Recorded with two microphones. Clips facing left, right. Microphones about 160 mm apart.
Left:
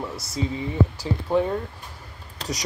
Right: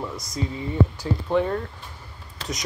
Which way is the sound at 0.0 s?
5° left (ahead or behind).